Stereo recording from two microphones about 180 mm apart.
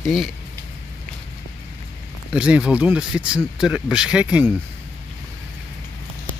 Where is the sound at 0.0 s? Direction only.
Centre (ahead or behind).